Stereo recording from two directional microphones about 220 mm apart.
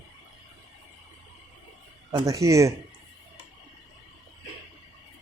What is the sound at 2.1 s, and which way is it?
Speech, 15° right (ahead or behind).